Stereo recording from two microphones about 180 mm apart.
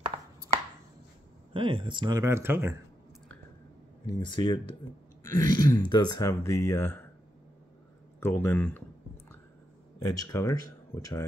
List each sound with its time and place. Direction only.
1.5 s speech: 30° right (ahead or behind); by 2.7 s 15° right (ahead or behind)
4.0 s speech: 25° left (ahead or behind)
8.2 s speech: 10° left (ahead or behind)
10.0 s speech: 15° left (ahead or behind)